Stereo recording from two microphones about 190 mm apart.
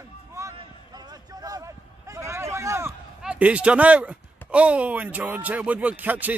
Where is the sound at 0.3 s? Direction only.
15° right (ahead or behind).